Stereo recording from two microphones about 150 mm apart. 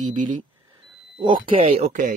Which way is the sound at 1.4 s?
40° right (ahead or behind).